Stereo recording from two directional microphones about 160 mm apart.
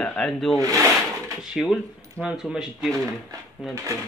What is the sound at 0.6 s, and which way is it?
Speech, 20° right (ahead or behind).